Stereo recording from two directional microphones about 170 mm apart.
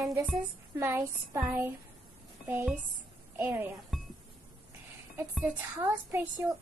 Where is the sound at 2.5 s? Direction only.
15° right (ahead or behind).